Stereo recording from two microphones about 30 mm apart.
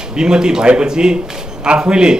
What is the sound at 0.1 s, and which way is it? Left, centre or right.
A man's voice, right.